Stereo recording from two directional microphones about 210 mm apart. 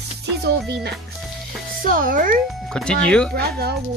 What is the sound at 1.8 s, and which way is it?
Speech, 40° right (ahead or behind).